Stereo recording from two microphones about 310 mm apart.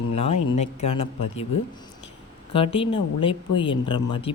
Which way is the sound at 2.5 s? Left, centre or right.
Centre.